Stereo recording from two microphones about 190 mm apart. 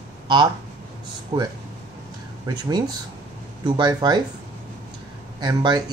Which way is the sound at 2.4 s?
20° right (ahead or behind).